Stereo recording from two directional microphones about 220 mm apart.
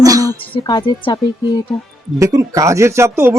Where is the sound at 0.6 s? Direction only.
20° left (ahead or behind).